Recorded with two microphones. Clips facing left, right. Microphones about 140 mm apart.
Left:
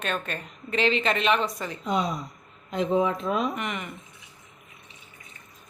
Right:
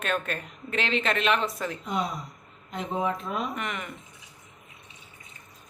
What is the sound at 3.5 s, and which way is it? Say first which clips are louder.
Speech: left 2 dB; centre (ahead or behind).